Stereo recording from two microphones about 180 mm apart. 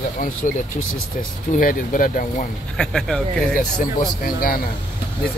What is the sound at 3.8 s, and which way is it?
Speech, 50° left (ahead or behind).